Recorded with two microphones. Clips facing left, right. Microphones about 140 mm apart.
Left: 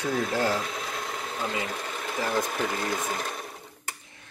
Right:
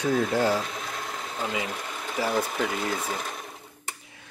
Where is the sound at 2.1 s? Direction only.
5° right (ahead or behind).